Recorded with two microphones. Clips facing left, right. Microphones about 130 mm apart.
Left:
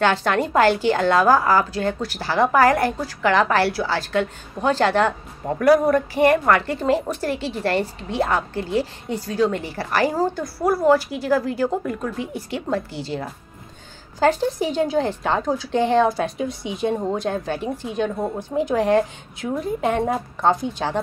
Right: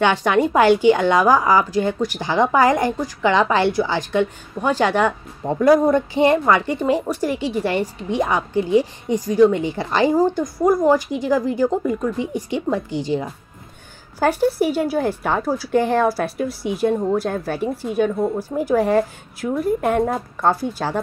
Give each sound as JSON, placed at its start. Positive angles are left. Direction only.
{"t": 0.0, "sound": "a woman's voice", "side_deg": -15}